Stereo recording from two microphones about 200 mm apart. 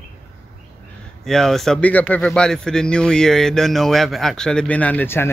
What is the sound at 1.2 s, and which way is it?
A man's voice, centre (ahead or behind).